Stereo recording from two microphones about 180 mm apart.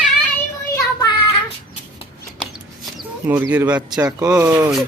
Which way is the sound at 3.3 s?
10° right (ahead or behind).